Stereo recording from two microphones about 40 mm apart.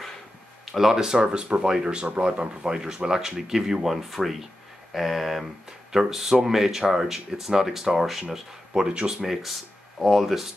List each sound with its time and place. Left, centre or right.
0.7 s speech: centre
1.2 s speech: right
1.6 s speech: centre
8.7 s speech: right
9.2 s speech: centre